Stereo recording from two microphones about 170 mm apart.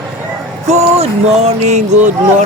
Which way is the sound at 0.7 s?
40° right (ahead or behind).